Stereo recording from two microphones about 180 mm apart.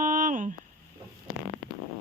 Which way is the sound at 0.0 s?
45° right (ahead or behind).